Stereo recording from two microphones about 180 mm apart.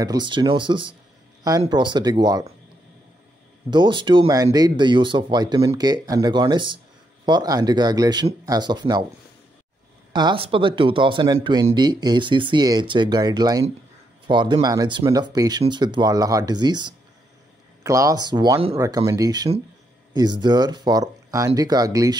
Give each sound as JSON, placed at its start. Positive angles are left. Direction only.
{"t": 0.0, "sound": "speech", "side_deg": -25}
{"t": 3.7, "sound": "speech", "side_deg": -25}
{"t": 10.1, "sound": "speech", "side_deg": -25}